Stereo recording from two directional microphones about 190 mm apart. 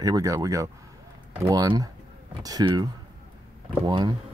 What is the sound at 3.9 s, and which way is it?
Speech, 25° right (ahead or behind).